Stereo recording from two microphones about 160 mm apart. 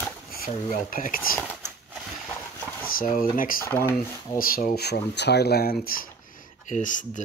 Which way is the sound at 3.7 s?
15° left (ahead or behind).